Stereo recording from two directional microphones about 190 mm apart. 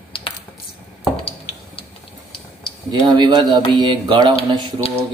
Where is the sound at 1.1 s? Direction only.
30° left (ahead or behind).